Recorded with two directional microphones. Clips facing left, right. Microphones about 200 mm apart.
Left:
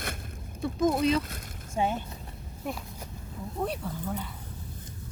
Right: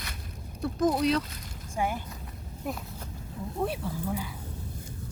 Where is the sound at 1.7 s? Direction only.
25° left (ahead or behind).